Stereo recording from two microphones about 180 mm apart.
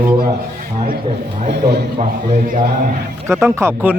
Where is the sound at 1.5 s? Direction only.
65° right (ahead or behind).